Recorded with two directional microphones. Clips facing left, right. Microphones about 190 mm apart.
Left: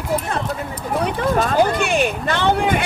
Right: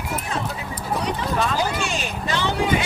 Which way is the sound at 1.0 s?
50° left (ahead or behind).